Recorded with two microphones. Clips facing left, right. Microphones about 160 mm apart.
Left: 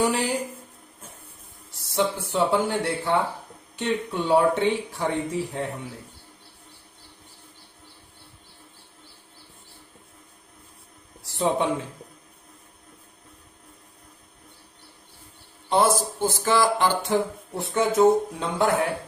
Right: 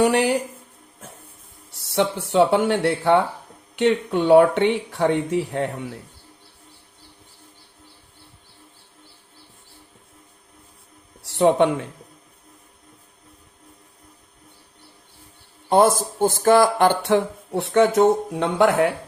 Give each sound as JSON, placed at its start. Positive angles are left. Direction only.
{"t": 0.0, "sound": "speech", "side_deg": -70}
{"t": 2.0, "sound": "speech", "side_deg": -70}
{"t": 11.3, "sound": "speech", "side_deg": -65}
{"t": 16.0, "sound": "speech", "side_deg": -50}